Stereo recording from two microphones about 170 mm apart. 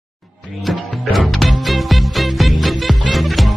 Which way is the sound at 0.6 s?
Centre (ahead or behind).